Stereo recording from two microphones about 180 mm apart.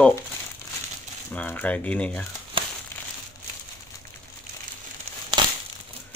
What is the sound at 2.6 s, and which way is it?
Crumpling, 30° right (ahead or behind).